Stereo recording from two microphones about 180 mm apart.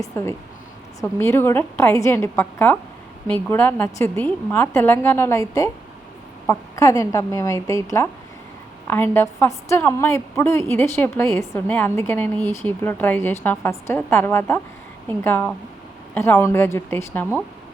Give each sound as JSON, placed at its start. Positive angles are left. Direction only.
{"t": 0.0, "sound": "a woman's voice", "side_deg": 15}